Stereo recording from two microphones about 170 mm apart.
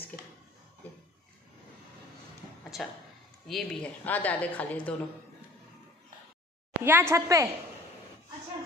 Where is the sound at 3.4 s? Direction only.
Centre (ahead or behind).